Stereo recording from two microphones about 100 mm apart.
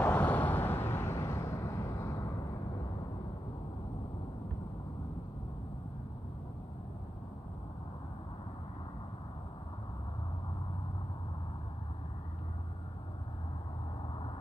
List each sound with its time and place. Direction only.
0.0 s vehicle: 15° left (ahead or behind); by 2.3 s 30° left (ahead or behind)